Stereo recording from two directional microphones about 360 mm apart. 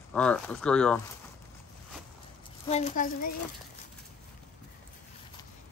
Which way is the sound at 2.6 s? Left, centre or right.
Centre.